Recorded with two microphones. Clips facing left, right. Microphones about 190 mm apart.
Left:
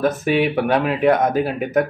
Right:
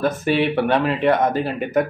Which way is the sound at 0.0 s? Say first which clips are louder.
Left 1 dB; 5° left (ahead or behind).